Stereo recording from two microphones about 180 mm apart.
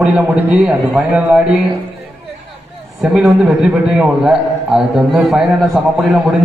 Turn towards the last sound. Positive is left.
turn(degrees=-5)  # may be behind; listen again after turning